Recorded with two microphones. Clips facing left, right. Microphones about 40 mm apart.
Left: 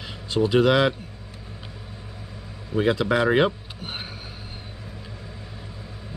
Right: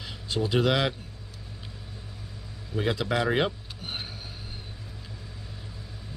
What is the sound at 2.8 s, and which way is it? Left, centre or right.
Speech, centre.